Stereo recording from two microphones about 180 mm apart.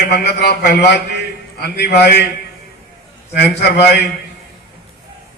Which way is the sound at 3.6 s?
65° left (ahead or behind).